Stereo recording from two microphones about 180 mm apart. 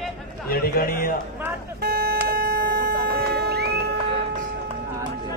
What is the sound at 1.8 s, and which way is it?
Vehicle, 60° right (ahead or behind).